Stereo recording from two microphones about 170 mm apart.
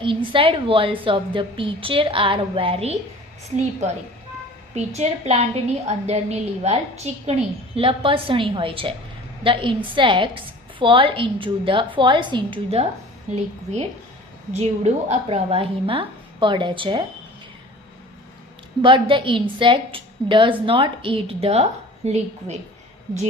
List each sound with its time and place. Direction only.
0.0 s a woman's voice: 30° right (ahead or behind)
4.9 s a woman's voice: 40° right (ahead or behind)
14.5 s a woman's voice: 40° right (ahead or behind)
18.8 s a woman's voice: 30° right (ahead or behind)